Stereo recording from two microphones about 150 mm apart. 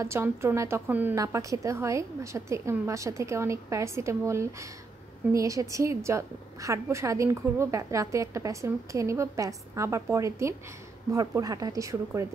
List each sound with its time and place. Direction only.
0.0 s a woman's voice: 15° right (ahead or behind)